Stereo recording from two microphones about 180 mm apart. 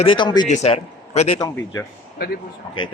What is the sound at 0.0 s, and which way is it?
Speech, 25° left (ahead or behind).